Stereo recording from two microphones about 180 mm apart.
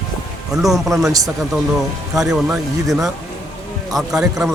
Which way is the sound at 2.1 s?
Centre (ahead or behind).